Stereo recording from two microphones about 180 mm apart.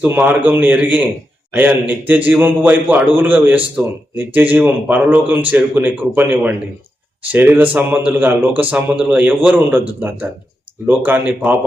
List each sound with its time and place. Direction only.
0.0 s a man's voice: 10° right (ahead or behind)
10.8 s a man's voice: 10° right (ahead or behind)